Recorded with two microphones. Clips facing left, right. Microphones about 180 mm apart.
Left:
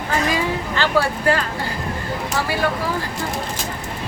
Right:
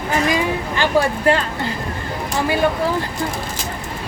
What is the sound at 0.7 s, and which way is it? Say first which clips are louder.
Speech: right 2 dB; 20° right (ahead or behind).